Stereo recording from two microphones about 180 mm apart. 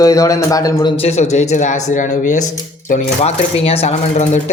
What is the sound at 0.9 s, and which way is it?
Speech, 35° left (ahead or behind).